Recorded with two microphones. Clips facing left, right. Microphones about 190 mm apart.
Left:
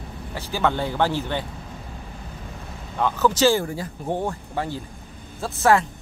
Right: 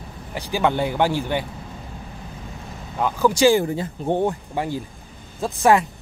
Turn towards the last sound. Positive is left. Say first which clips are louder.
# right 2 dB
turn(degrees=-15)  # may be behind; listen again after turning